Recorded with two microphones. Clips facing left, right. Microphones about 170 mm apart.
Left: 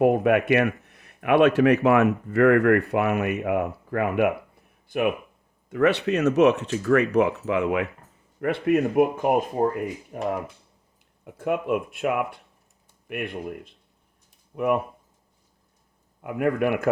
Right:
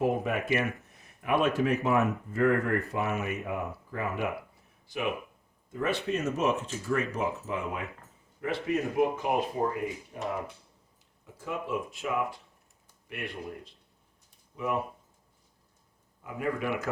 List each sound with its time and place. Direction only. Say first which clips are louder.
0.0 s speech: left 9 dB; 65° left (ahead or behind)
4.9 s speech: left 9 dB; 55° left (ahead or behind)
5.7 s speech: left 9 dB; 75° left (ahead or behind)
8.4 s speech: left 8 dB; 60° left (ahead or behind)
11.3 s speech: left 9 dB; 60° left (ahead or behind)
16.2 s speech: left 8 dB; 65° left (ahead or behind)